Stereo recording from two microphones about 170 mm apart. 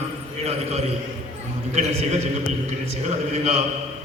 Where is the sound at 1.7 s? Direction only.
40° right (ahead or behind).